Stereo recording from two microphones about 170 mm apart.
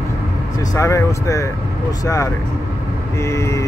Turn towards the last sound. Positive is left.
turn(degrees=15)  # may be behind; listen again after turning